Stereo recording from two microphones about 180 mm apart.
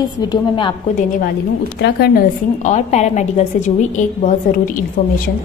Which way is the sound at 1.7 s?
65° left (ahead or behind).